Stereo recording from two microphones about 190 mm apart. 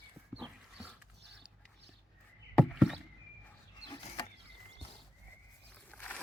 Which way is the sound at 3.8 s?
20° left (ahead or behind).